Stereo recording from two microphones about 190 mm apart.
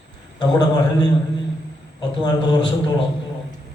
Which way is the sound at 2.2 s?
20° left (ahead or behind).